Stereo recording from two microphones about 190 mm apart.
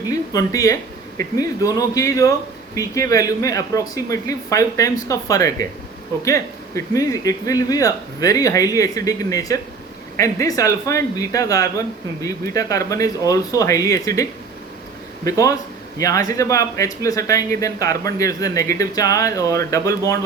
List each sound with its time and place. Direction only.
0.1 s speech: 15° left (ahead or behind)